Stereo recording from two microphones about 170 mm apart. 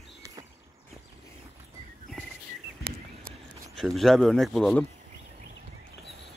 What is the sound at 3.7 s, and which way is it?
Speech, centre (ahead or behind).